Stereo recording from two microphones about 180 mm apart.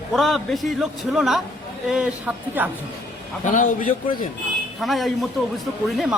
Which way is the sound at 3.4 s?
45° left (ahead or behind).